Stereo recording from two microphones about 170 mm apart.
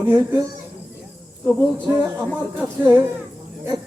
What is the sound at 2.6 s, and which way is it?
Speech, 15° right (ahead or behind).